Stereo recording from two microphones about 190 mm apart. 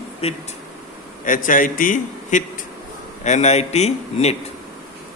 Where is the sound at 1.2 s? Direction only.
45° left (ahead or behind).